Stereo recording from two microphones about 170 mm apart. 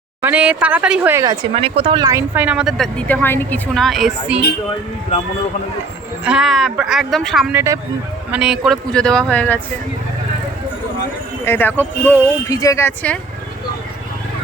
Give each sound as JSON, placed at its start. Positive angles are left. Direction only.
{"t": 0.2, "sound": "speech", "side_deg": -10}
{"t": 1.5, "sound": "speech", "side_deg": -35}
{"t": 3.8, "sound": "speech", "side_deg": 0}
{"t": 6.2, "sound": "speech", "side_deg": 0}
{"t": 7.5, "sound": "speech", "side_deg": -15}
{"t": 8.3, "sound": "speech", "side_deg": -5}
{"t": 11.4, "sound": "speech", "side_deg": 10}